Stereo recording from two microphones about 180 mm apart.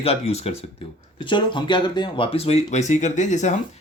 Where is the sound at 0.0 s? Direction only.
35° left (ahead or behind).